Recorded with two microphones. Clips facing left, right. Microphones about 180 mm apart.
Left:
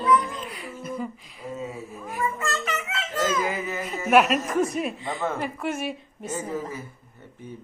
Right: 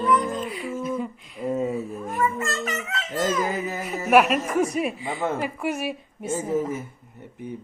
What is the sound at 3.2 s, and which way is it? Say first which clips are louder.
Dog: right 1 dB; 40° right (ahead or behind).